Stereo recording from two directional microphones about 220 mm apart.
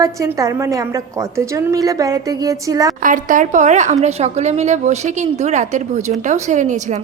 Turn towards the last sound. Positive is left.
turn(degrees=-35)  # may be behind; listen again after turning